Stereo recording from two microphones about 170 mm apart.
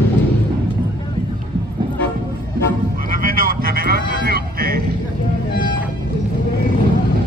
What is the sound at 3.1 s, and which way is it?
Vehicle, 55° right (ahead or behind).